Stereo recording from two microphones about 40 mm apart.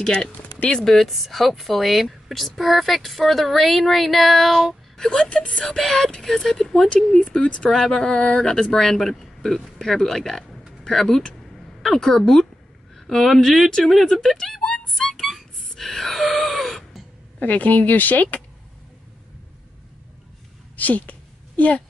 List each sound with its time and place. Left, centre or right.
0.0 s speech: centre
0.8 s a woman's voice: centre
4.9 s wail: centre
5.2 s speech: left
5.7 s speech: centre
7.4 s speech: left
7.7 s speech: centre
11.5 s a sound: centre
13.2 s a woman's voice: centre
14.0 s speech: centre
15.0 s a sound: centre
17.4 s speech: left
20.7 s a sound: left